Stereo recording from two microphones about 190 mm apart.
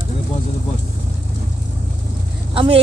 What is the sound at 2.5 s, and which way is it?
Speech, 25° right (ahead or behind).